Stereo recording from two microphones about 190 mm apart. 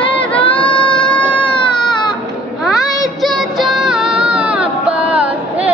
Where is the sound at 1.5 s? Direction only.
25° left (ahead or behind).